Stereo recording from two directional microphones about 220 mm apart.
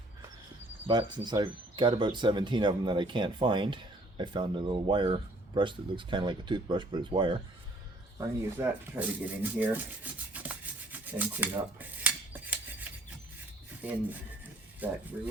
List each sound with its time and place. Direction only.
0.9 s speech: 20° right (ahead or behind)
8.5 s rub: 10° right (ahead or behind)
13.8 s speech: 10° right (ahead or behind)